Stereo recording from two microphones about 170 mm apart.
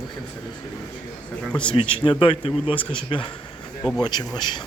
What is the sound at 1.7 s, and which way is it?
Speech, 30° left (ahead or behind).